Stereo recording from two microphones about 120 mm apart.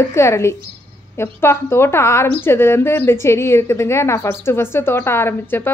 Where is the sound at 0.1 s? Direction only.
25° left (ahead or behind).